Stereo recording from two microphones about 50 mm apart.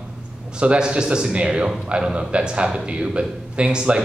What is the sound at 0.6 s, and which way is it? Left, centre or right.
Speech, centre.